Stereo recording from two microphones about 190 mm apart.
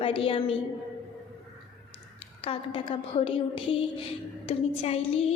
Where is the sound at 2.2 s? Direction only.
30° left (ahead or behind).